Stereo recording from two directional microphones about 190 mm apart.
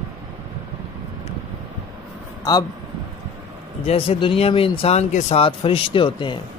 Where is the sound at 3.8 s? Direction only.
30° left (ahead or behind).